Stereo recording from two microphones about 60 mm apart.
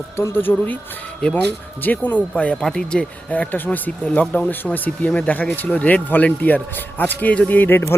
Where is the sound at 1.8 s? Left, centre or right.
Left.